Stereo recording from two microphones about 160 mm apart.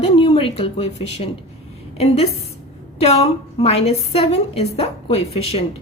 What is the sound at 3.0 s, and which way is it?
A woman's voice, 40° left (ahead or behind).